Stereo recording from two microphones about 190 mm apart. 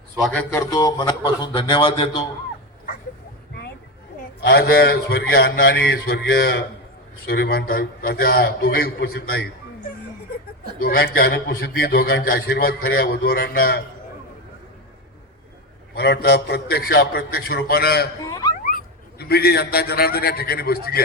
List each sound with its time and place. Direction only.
0.5 s a man's voice: 20° left (ahead or behind)
4.4 s a man's voice: 55° left (ahead or behind)
10.8 s a man's voice: 50° left (ahead or behind)
16.0 s a man's voice: 60° left (ahead or behind)
18.2 s a sound: 20° left (ahead or behind)
19.2 s a man's voice: 55° left (ahead or behind)